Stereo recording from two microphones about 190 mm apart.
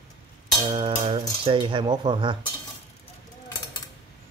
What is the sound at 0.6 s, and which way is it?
Speech, 25° right (ahead or behind).